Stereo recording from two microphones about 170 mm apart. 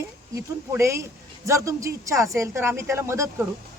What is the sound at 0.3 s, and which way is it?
A woman's voice, 15° right (ahead or behind).